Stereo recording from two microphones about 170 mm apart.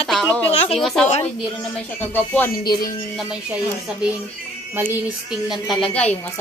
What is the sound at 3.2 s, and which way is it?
Speech, 5° right (ahead or behind).